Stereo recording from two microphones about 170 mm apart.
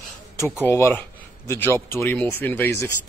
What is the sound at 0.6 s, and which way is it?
A man's voice, 15° left (ahead or behind).